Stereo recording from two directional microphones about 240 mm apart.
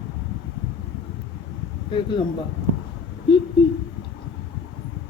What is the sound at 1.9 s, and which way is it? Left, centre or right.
Speech, centre.